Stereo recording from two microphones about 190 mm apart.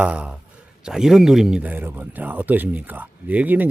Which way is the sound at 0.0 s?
5° right (ahead or behind).